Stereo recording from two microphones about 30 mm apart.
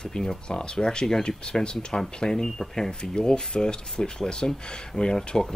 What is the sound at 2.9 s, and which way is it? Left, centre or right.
Speech, left.